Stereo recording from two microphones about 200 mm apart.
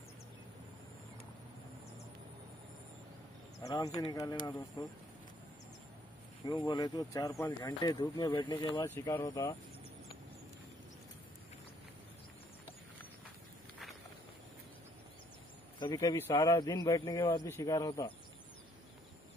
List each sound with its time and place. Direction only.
3.6 s speech: 20° left (ahead or behind)
6.4 s speech: 20° left (ahead or behind)
15.8 s speech: 20° left (ahead or behind)